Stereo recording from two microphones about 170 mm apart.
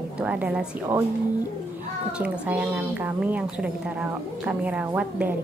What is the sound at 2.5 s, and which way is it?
A woman's voice, 10° right (ahead or behind).